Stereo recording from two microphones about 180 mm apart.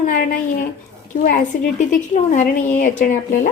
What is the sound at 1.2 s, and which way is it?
A woman's voice, 45° left (ahead or behind).